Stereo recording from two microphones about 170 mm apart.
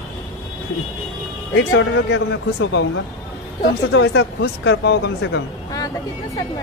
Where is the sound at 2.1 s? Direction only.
90° left.